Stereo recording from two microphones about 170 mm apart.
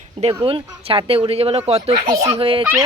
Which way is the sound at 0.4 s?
30° right (ahead or behind).